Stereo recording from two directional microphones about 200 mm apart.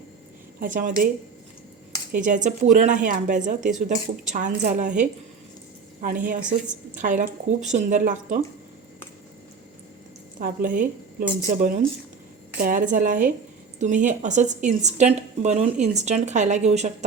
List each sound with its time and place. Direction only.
0.6 s a woman's voice: 40° right (ahead or behind)
2.1 s a woman's voice: 40° right (ahead or behind)
10.4 s a woman's voice: 45° right (ahead or behind)